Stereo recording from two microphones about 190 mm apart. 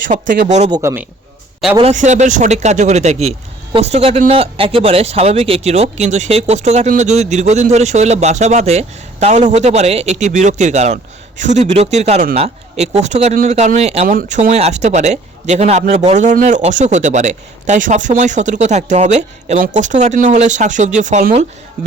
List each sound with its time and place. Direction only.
0.4 s speech: 40° right (ahead or behind)
0.7 s a man's voice: 15° right (ahead or behind)
1.8 s speech: 40° right (ahead or behind)